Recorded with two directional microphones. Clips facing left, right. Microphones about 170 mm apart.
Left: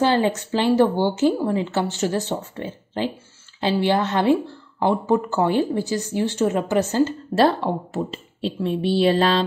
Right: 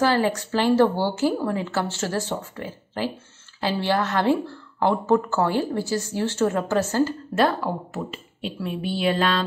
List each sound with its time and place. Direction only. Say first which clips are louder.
0.0 s a woman's voice: left 2 dB; 20° left (ahead or behind)
7.3 s speech: left 4 dB; 30° left (ahead or behind)